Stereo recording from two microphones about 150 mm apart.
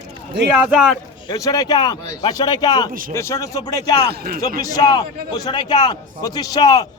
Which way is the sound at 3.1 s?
20° left (ahead or behind).